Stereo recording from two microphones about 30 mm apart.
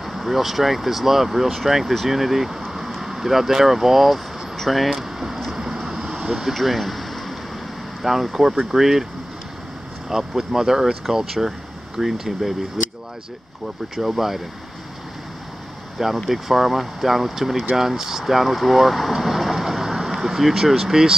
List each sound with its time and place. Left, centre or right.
0.0 s speech: centre
4.9 s vehicle: centre
6.1 s speech: centre
6.5 s a sound: centre
8.0 s speech: centre
10.0 s speech: centre
12.0 s speech: centre
13.9 s speech: centre
16.3 s speech: centre
18.2 s vehicle: centre
20.7 s speech: centre